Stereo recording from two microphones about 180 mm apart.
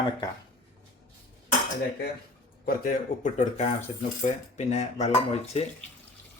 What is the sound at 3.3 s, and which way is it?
Speech, 40° left (ahead or behind).